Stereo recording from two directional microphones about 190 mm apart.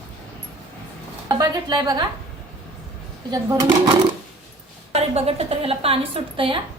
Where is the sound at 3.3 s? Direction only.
20° right (ahead or behind).